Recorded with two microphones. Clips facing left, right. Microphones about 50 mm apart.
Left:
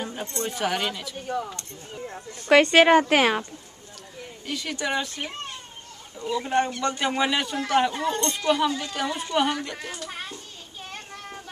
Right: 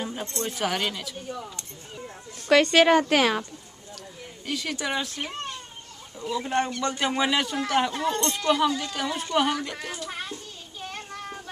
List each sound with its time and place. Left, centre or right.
0.0 s speech: centre
2.5 s a woman's voice: centre
4.5 s a man's voice: centre